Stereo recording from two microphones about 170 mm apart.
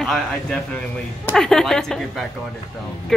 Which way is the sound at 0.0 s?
5° left (ahead or behind).